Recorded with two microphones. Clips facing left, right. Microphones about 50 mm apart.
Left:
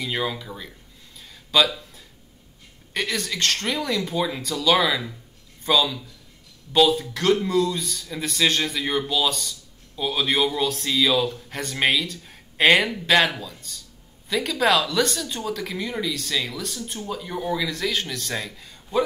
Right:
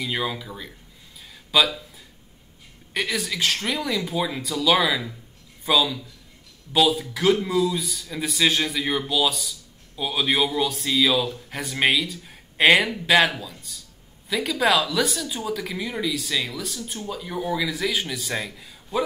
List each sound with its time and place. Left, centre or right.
0.0 s a man's voice: centre
2.9 s a man's voice: centre